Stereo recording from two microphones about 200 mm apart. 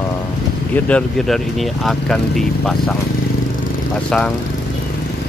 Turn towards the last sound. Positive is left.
turn(degrees=5)  # may be behind; listen again after turning